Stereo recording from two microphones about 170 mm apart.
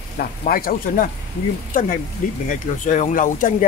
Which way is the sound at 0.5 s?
60° left (ahead or behind).